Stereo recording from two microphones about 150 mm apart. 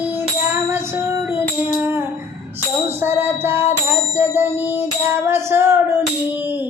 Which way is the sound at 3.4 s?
15° right (ahead or behind).